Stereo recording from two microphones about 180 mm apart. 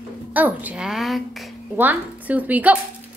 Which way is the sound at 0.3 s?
10° right (ahead or behind).